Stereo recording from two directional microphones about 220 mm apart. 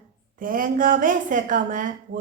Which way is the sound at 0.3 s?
40° right (ahead or behind).